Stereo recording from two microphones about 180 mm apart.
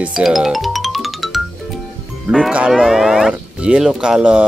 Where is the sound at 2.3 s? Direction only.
5° right (ahead or behind).